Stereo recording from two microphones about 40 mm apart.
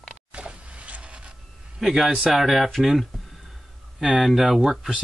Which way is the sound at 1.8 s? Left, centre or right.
Centre.